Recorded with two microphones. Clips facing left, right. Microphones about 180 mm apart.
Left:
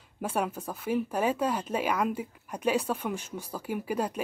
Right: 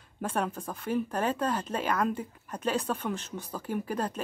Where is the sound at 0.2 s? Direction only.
10° left (ahead or behind).